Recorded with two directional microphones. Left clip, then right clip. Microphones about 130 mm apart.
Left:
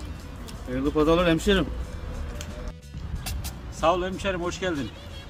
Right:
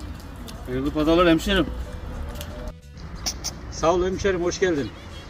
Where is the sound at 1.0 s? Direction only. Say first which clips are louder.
Right 3 dB; 25° left (ahead or behind).